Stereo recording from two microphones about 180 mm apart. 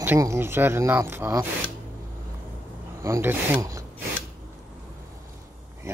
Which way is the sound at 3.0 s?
15° right (ahead or behind).